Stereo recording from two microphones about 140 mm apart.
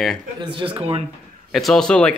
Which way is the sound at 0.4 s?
35° right (ahead or behind).